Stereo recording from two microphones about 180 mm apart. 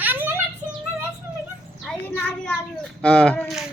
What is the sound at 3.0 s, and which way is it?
Speech, 5° left (ahead or behind).